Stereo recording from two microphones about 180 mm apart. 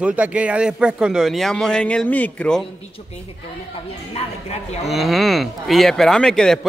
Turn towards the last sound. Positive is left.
turn(degrees=5)  # may be behind; listen again after turning